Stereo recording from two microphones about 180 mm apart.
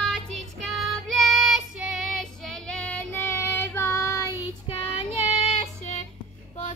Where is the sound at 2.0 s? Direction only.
Centre (ahead or behind).